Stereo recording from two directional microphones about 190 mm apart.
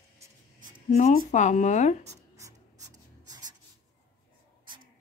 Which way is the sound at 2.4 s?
15° right (ahead or behind).